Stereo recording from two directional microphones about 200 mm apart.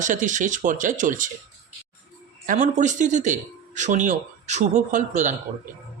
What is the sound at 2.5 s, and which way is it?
A man's voice, 35° right (ahead or behind).